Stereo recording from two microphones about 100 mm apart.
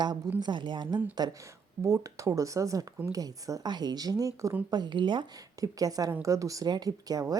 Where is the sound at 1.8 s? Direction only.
35° right (ahead or behind).